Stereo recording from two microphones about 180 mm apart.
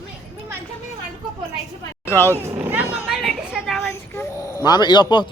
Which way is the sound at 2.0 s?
15° left (ahead or behind).